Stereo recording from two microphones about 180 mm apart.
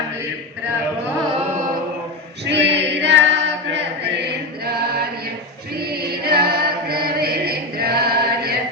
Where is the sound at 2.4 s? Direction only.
75° right (ahead or behind).